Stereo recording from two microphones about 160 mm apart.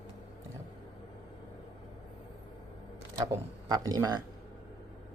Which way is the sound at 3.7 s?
25° right (ahead or behind).